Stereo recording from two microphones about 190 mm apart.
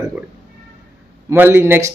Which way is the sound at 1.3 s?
10° right (ahead or behind).